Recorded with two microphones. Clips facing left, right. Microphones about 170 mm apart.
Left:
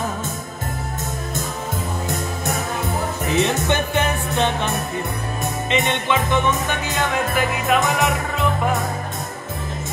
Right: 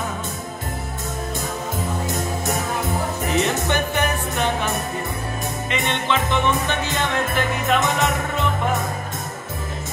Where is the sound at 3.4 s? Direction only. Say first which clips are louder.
Left 3 dB; 20° left (ahead or behind).